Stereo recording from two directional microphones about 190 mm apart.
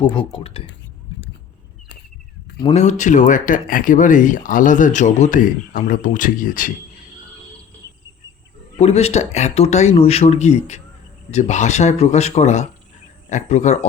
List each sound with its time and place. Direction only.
0.3 s speech: 30° left (ahead or behind)
2.7 s speech: 40° left (ahead or behind)
8.8 s speech: 35° left (ahead or behind)